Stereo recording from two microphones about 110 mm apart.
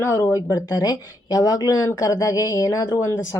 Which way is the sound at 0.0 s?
25° left (ahead or behind).